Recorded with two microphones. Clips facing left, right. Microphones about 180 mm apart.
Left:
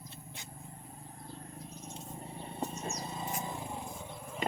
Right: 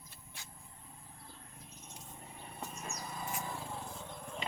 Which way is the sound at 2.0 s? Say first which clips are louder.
Left 6 dB; 30° left (ahead or behind).